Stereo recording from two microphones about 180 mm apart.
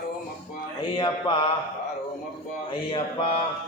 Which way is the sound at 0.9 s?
25° left (ahead or behind).